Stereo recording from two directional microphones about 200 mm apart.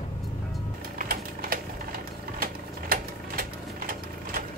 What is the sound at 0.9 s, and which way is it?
Sewing machine, 45° right (ahead or behind).